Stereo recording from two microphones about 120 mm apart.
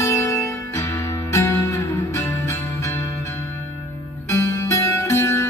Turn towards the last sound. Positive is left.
turn(degrees=25)  # may be behind; listen again after turning